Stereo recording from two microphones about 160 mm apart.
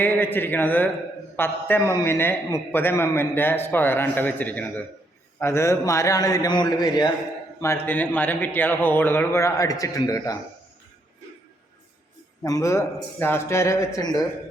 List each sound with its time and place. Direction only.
0.0 s a man's voice: 10° left (ahead or behind)
7.6 s a man's voice: 15° left (ahead or behind)
12.4 s a man's voice: 20° left (ahead or behind)